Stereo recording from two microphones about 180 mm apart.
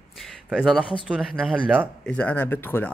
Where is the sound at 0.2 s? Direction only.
Centre (ahead or behind).